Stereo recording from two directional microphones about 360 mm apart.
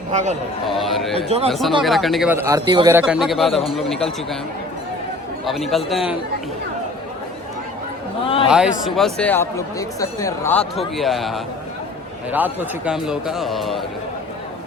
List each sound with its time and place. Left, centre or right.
0.1 s a man's voice: centre
0.8 s speech: centre
5.5 s speech: centre
8.2 s a man's voice: centre
8.4 s speech: centre